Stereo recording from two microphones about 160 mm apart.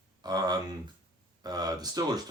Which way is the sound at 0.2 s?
25° right (ahead or behind).